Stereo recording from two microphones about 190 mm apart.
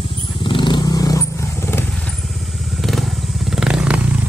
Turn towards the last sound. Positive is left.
turn(degrees=-5)  # may be behind; listen again after turning